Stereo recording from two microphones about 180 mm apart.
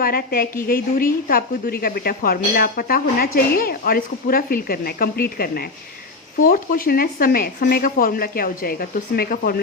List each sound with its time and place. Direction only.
0.0 s speech: 55° left (ahead or behind)